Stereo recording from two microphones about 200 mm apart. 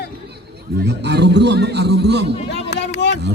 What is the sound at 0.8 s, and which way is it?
A man's voice, 55° right (ahead or behind).